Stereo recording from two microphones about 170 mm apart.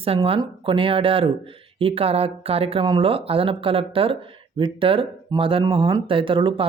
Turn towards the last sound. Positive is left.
turn(degrees=-30)  # may be behind; listen again after turning